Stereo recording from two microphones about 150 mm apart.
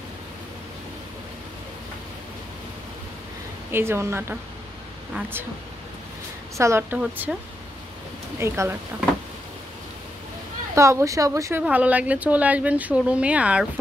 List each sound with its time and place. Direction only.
3.7 s speech: 15° right (ahead or behind)
6.5 s speech: 20° right (ahead or behind)
8.4 s speech: 15° right (ahead or behind)
10.7 s speech: 20° right (ahead or behind)
11.6 s speech: 10° right (ahead or behind)